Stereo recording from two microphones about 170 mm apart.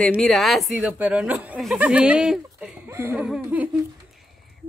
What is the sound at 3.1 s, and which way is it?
Speech, 5° right (ahead or behind).